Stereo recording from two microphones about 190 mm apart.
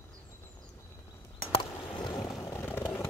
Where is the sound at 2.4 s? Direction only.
15° left (ahead or behind).